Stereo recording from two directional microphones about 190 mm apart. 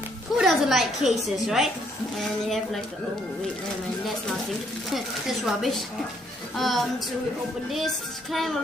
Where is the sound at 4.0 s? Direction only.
Centre (ahead or behind).